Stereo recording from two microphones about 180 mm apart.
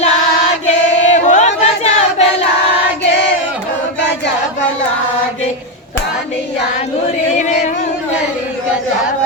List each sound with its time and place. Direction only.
0.7 s choir: 40° left (ahead or behind)